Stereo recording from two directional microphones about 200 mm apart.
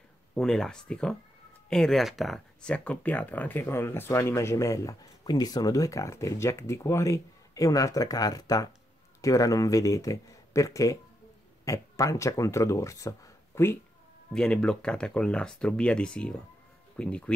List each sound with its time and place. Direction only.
0.4 s speech: 5° left (ahead or behind)
14.3 s speech: 5° left (ahead or behind)